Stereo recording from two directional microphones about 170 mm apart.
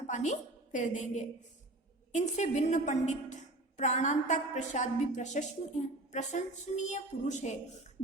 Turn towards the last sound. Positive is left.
turn(degrees=45)  # may be behind; listen again after turning